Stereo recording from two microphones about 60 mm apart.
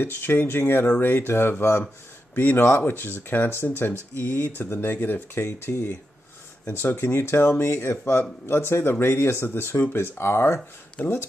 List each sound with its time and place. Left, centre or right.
0.0 s speech: left
11.0 s speech: left